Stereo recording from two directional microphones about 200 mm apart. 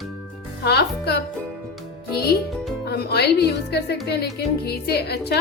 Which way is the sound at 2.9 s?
55° left (ahead or behind).